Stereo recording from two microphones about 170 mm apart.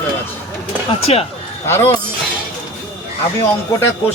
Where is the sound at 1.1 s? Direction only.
35° left (ahead or behind).